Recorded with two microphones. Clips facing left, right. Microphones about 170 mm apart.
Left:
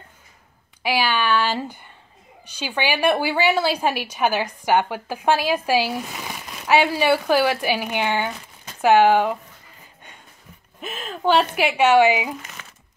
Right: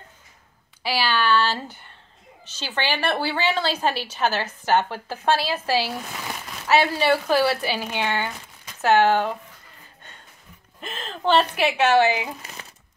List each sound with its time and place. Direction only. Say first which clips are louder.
0.8 s a woman's voice: left 1 dB; 15° left (ahead or behind)
10.8 s a woman's voice: left 3 dB; 10° left (ahead or behind)
12.6 s a sound: right 1 dB; 35° right (ahead or behind)